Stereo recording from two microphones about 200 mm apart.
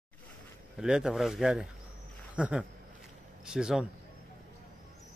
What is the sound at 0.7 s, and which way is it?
Speech, 5° right (ahead or behind).